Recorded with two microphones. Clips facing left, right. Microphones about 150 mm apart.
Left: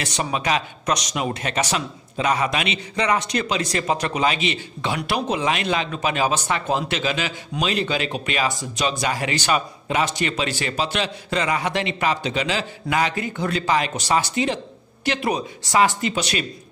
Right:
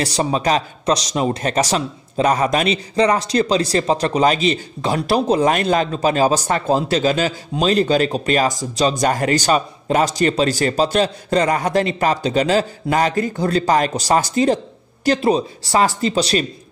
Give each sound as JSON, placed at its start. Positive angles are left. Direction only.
{"t": 0.0, "sound": "speech", "side_deg": -35}
{"t": 15.0, "sound": "speech", "side_deg": -30}